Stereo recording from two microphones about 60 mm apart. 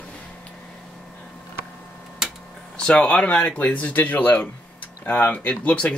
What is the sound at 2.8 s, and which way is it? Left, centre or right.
Speech, centre.